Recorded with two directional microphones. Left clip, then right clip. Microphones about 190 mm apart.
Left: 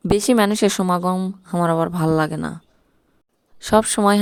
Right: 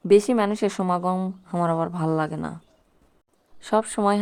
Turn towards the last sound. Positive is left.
turn(degrees=55)  # may be behind; listen again after turning